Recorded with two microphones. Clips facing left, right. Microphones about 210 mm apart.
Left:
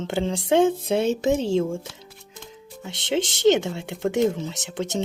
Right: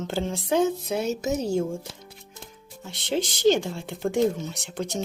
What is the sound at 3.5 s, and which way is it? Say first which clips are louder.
Speech: left 3 dB; 75° left (ahead or behind).